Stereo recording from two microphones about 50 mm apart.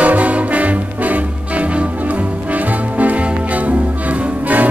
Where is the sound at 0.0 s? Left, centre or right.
Right.